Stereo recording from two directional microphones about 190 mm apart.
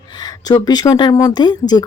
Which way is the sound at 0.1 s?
20° left (ahead or behind).